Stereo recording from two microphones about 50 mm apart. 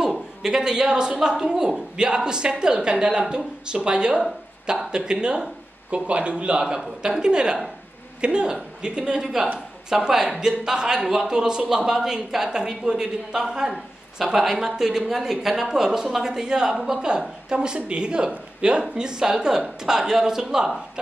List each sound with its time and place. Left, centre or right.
0.4 s a man's voice: centre